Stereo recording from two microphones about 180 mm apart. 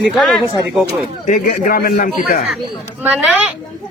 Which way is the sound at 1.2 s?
45° left (ahead or behind).